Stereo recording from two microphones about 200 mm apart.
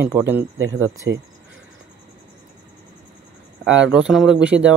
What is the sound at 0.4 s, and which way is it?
Speech, 70° right (ahead or behind).